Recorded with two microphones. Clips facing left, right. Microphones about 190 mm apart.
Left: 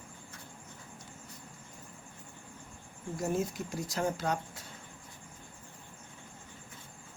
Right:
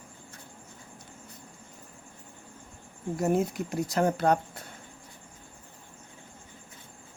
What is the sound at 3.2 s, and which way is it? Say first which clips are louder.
Speech: right 6 dB; 60° right (ahead or behind).